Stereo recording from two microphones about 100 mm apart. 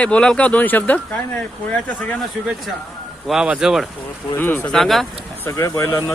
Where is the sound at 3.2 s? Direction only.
10° right (ahead or behind).